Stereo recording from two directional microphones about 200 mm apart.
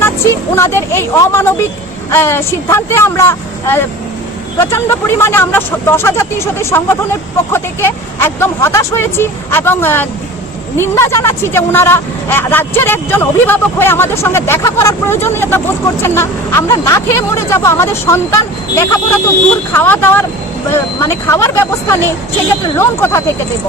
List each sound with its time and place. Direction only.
0.5 s speech: 15° left (ahead or behind)